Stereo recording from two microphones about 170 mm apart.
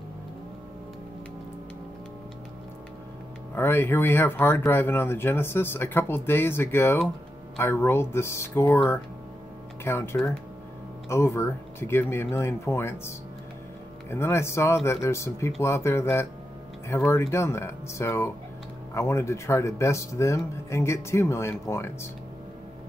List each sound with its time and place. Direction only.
3.5 s speech: 10° left (ahead or behind)
14.1 s speech: 15° left (ahead or behind)